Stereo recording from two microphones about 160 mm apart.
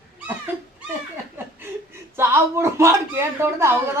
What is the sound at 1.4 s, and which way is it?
Speech, 15° right (ahead or behind).